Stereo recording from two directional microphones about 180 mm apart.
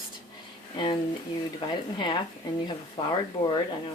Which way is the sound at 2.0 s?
25° left (ahead or behind).